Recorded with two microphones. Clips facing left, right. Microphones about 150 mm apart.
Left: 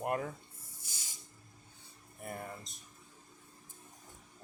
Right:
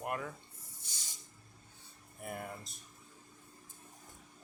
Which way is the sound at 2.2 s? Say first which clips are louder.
Even; 5° right (ahead or behind).